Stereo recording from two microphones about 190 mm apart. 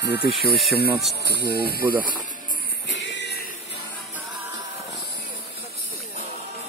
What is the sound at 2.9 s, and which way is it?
Music, 70° left (ahead or behind).